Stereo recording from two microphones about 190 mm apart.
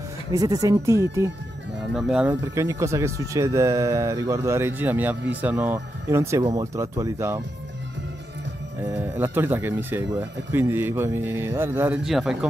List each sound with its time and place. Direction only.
0.3 s speech: 20° right (ahead or behind)
2.0 s a man's voice: 5° right (ahead or behind)
2.5 s speech: 15° right (ahead or behind)
8.8 s speech: 10° right (ahead or behind)
12.0 s a man's voice: centre (ahead or behind)